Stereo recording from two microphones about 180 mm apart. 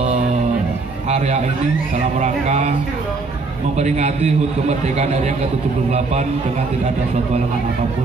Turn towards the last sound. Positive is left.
turn(degrees=-35)  # may be behind; listen again after turning